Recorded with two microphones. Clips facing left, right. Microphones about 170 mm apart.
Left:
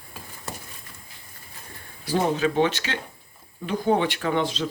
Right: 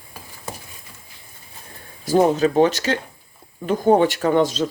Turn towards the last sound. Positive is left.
turn(degrees=-40)  # may be behind; listen again after turning